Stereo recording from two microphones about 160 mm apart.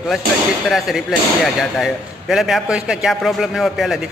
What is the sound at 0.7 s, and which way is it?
A man's voice, centre (ahead or behind).